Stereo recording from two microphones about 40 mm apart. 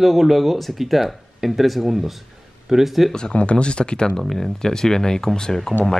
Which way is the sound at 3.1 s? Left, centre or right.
Left.